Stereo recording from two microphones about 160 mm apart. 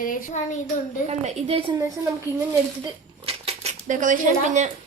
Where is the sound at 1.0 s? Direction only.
45° right (ahead or behind).